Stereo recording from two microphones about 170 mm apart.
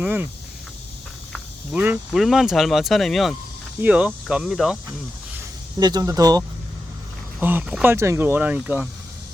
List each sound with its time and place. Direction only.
0.0 s speech: 10° right (ahead or behind)
1.7 s speech: 10° right (ahead or behind)
5.8 s speech: 20° right (ahead or behind)
7.3 s speech: 10° right (ahead or behind)